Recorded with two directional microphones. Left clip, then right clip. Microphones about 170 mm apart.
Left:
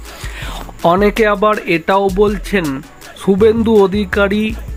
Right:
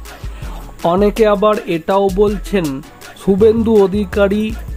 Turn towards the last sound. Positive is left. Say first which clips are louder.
# even
turn(degrees=-5)  # may be behind; listen again after turning